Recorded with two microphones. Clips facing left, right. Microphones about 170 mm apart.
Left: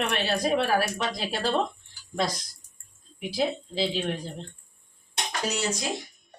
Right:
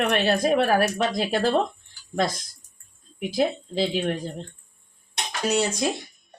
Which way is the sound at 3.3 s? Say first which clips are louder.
Right 4 dB; 50° right (ahead or behind).